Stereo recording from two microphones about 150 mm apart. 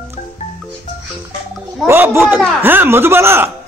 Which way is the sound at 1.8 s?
15° right (ahead or behind).